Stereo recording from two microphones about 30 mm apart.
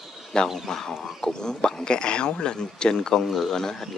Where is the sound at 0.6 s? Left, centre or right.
Centre.